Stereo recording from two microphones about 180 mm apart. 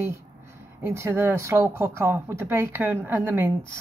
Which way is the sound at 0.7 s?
15° right (ahead or behind).